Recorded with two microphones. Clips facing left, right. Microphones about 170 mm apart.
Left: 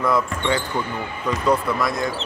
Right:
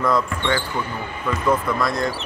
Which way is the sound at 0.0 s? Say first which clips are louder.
Even; centre (ahead or behind).